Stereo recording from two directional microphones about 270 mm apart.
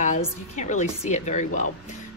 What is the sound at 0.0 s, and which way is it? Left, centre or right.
A woman's voice, left.